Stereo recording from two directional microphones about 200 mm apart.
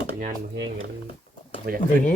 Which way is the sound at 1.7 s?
45° right (ahead or behind).